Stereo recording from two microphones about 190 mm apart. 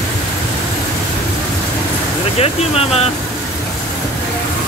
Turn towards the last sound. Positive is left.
turn(degrees=30)  # may be behind; listen again after turning